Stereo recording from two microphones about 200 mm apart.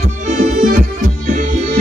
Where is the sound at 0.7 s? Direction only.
40° right (ahead or behind).